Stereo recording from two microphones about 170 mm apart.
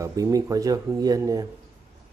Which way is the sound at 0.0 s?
20° right (ahead or behind).